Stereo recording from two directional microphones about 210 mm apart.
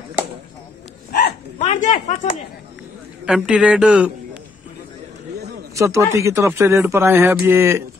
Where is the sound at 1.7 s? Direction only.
35° left (ahead or behind).